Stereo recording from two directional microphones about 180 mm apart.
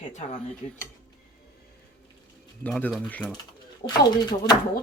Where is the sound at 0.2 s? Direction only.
40° left (ahead or behind).